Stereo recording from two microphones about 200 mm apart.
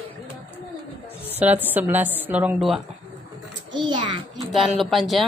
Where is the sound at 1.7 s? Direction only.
10° right (ahead or behind).